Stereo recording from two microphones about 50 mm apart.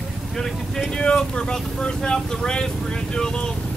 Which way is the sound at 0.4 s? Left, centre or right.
Centre.